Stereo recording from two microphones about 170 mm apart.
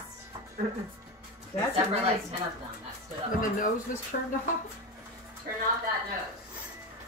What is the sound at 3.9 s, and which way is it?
Speech, 50° left (ahead or behind).